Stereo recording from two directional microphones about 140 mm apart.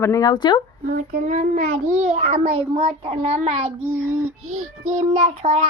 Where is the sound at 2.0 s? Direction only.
55° right (ahead or behind).